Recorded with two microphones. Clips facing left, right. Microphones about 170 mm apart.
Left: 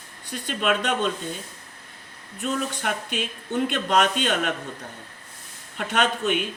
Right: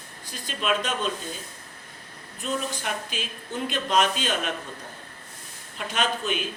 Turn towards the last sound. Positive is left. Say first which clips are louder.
# left 4 dB
turn(degrees=70)  # may be behind; listen again after turning